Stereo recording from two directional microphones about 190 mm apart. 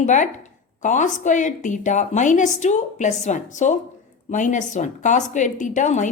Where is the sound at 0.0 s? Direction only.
40° left (ahead or behind).